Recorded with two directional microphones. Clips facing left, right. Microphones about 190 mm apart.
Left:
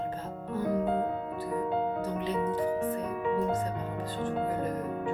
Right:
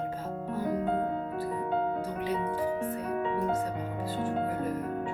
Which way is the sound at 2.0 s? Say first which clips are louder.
Left 1 dB; 10° right (ahead or behind).